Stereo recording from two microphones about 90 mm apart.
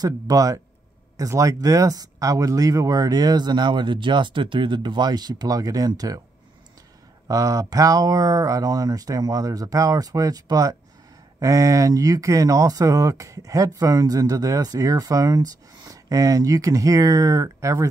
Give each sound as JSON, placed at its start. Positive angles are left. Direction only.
{"t": 0.0, "sound": "speech", "side_deg": -40}
{"t": 7.2, "sound": "speech", "side_deg": -40}